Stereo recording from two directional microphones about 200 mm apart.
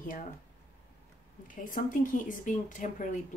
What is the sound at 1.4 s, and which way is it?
Speech, 40° left (ahead or behind).